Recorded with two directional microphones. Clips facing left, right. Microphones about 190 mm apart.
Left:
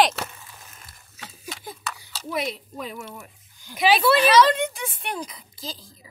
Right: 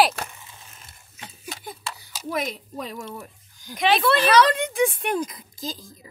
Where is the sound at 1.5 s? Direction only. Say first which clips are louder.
Even; 40° right (ahead or behind).